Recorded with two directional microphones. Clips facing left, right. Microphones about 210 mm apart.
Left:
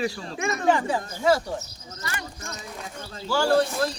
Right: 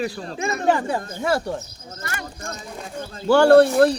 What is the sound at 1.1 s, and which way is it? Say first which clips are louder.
Speech: left 3 dB; 55° right (ahead or behind).